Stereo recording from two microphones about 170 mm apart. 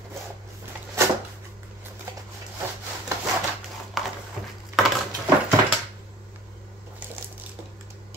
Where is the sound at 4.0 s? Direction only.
Centre (ahead or behind).